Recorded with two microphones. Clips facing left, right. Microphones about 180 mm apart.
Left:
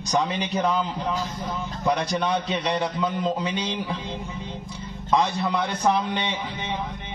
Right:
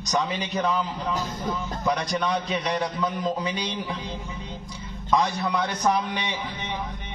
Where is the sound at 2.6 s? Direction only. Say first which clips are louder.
Left 1 dB; 25° left (ahead or behind).